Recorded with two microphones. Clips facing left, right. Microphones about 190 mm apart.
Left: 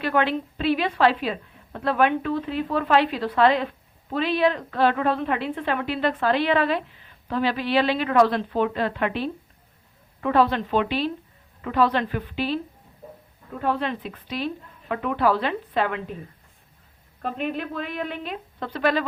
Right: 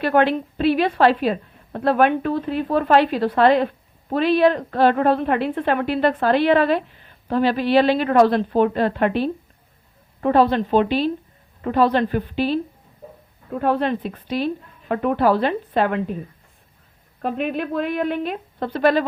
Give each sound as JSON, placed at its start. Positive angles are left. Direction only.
{"t": 0.0, "sound": "a woman's voice", "side_deg": -50}
{"t": 13.6, "sound": "a woman's voice", "side_deg": -50}
{"t": 17.6, "sound": "a woman's voice", "side_deg": -55}